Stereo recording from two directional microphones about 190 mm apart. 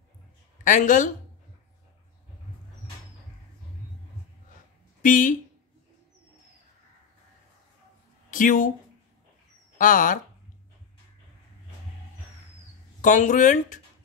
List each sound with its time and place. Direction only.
0.7 s speech: 40° left (ahead or behind)
5.0 s speech: 45° left (ahead or behind)
8.3 s speech: 45° left (ahead or behind)
9.8 s speech: 45° left (ahead or behind)
13.0 s speech: 40° left (ahead or behind)